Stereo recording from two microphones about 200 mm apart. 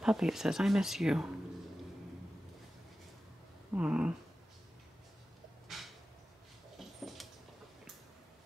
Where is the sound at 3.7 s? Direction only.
5° right (ahead or behind).